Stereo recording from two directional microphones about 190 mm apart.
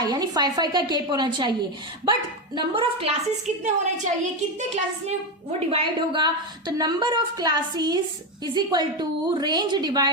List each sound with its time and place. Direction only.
0.0 s a woman's voice: 20° right (ahead or behind)
2.6 s a woman's voice: 25° right (ahead or behind)
3.4 s a woman's voice: 40° right (ahead or behind); by 10.1 s 20° right (ahead or behind)